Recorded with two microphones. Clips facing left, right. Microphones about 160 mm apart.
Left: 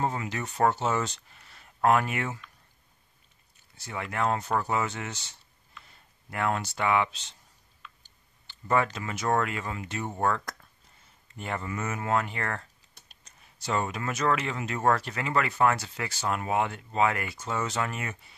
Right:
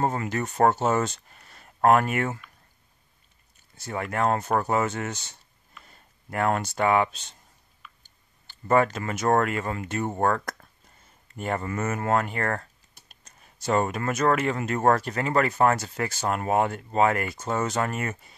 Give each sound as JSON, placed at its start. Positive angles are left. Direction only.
{"t": 0.0, "sound": "speech", "side_deg": -45}
{"t": 3.7, "sound": "speech", "side_deg": -50}